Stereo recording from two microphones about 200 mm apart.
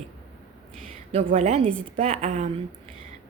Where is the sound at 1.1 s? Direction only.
35° right (ahead or behind).